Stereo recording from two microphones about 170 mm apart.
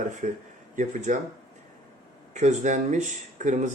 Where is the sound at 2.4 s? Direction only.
45° right (ahead or behind).